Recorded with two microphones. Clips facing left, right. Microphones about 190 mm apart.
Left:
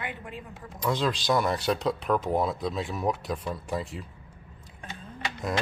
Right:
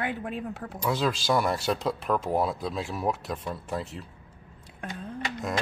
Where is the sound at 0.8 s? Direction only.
5° right (ahead or behind).